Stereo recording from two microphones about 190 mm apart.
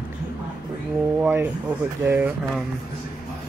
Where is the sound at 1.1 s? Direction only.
10° right (ahead or behind).